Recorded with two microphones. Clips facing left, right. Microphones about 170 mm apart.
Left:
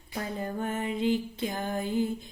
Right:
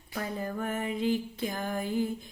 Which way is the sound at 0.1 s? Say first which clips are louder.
Left 1 dB; 30° left (ahead or behind).